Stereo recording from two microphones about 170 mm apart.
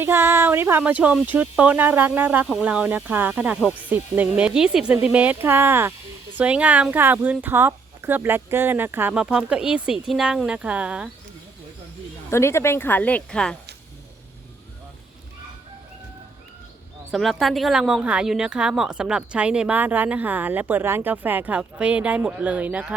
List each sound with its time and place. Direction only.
0.0 s speech: 15° right (ahead or behind)
12.3 s speech: 15° left (ahead or behind)
17.1 s speech: centre (ahead or behind)